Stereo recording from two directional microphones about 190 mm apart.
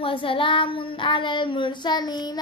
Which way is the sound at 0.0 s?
25° left (ahead or behind).